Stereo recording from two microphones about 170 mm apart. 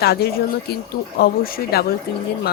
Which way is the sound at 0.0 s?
70° left (ahead or behind).